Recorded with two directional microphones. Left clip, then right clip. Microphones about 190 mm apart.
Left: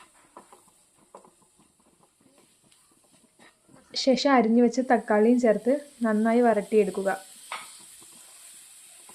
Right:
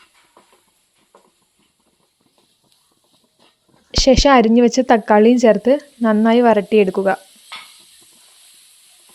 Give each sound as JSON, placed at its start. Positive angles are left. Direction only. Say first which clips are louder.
{"t": 3.9, "sound": "a woman's voice", "louder": "right 10 dB", "side_deg": -45}